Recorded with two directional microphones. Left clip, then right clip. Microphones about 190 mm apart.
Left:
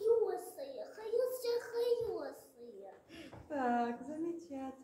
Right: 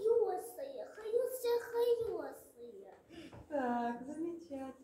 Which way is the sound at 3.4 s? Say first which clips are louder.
Left 1 dB; 35° left (ahead or behind).